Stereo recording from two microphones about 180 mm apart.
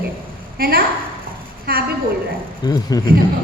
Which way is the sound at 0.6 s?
55° right (ahead or behind).